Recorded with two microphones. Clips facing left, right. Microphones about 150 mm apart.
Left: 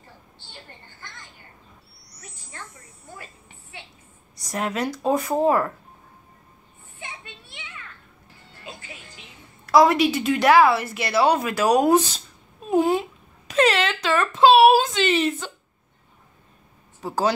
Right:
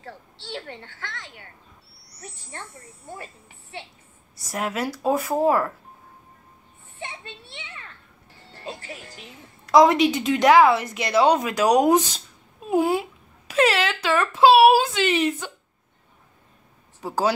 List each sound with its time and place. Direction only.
0.0 s a sound: 80° right
2.1 s speech: 30° right (ahead or behind)
4.5 s speech: 5° right (ahead or behind)
7.0 s children playing: 30° right (ahead or behind)
8.5 s music: 35° right (ahead or behind)
9.7 s a woman's voice: 20° right (ahead or behind)
17.0 s a woman's voice: 10° right (ahead or behind)